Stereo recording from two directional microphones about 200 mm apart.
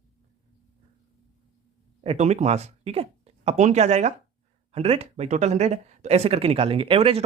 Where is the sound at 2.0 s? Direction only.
35° right (ahead or behind).